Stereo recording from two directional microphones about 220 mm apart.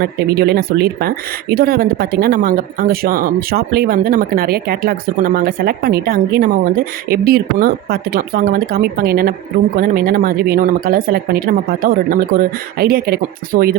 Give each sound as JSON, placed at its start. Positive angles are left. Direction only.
{"t": 0.0, "sound": "speech", "side_deg": -45}